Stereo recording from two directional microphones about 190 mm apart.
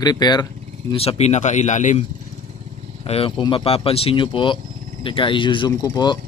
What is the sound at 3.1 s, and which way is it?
Speech, 30° left (ahead or behind).